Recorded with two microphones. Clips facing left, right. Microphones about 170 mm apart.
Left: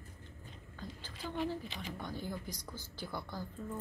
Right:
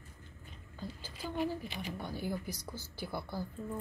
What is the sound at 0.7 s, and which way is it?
A woman's voice, 10° right (ahead or behind).